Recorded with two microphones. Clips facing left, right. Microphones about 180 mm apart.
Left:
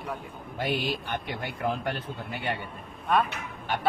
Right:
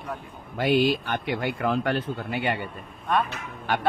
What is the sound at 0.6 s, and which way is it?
Speech, 90° right.